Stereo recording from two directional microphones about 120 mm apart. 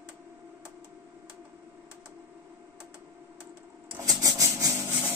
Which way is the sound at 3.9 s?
30° right (ahead or behind).